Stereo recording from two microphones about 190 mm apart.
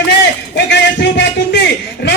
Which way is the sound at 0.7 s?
65° left (ahead or behind).